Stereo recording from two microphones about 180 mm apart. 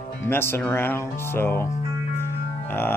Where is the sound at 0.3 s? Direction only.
10° left (ahead or behind).